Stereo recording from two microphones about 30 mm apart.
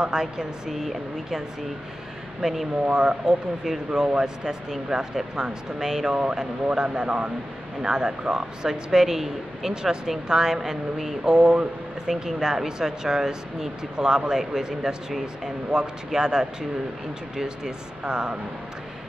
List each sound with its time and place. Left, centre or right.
0.0 s speech: right
0.7 s speech: centre
2.4 s speech: centre
2.9 s speech: right
8.9 s speech: centre
11.2 s speech: right
18.0 s speech: right